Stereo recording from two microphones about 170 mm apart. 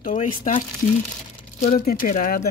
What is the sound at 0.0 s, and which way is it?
Speech, 50° left (ahead or behind).